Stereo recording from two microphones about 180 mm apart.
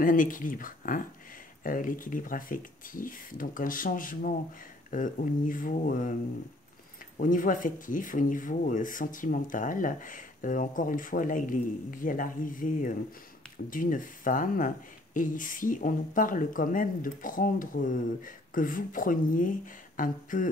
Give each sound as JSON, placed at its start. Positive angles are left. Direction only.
{"t": 0.0, "sound": "speech", "side_deg": 50}
{"t": 7.2, "sound": "speech", "side_deg": 50}